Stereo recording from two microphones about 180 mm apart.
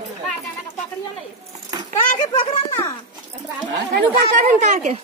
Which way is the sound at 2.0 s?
45° left (ahead or behind).